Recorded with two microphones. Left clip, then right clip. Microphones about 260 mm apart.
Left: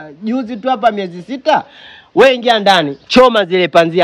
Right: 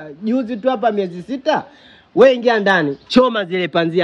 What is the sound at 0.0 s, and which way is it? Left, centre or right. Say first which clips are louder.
A man's voice: even; centre.